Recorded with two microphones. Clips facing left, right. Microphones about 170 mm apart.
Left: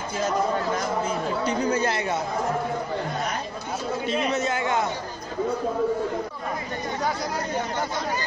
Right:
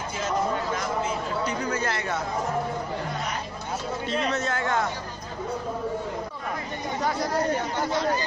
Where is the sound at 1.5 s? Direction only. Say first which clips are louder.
Left 4 dB; 25° left (ahead or behind).